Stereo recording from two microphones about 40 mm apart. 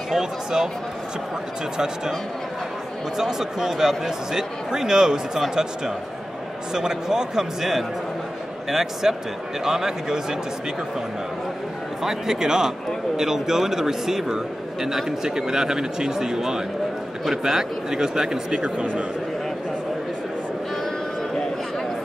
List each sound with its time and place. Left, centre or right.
0.2 s a man's voice: centre
3.2 s a man's voice: centre
12.0 s a man's voice: centre